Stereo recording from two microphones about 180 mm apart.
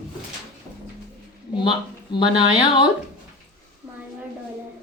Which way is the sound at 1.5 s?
25° left (ahead or behind).